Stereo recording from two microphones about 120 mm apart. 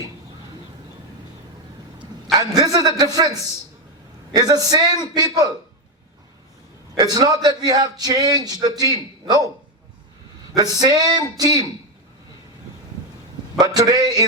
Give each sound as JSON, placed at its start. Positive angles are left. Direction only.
{"t": 2.6, "sound": "a man's voice", "side_deg": -30}
{"t": 4.4, "sound": "a man's voice", "side_deg": -30}
{"t": 6.9, "sound": "a man's voice", "side_deg": -35}
{"t": 10.5, "sound": "a man's voice", "side_deg": -30}
{"t": 13.7, "sound": "a man's voice", "side_deg": -30}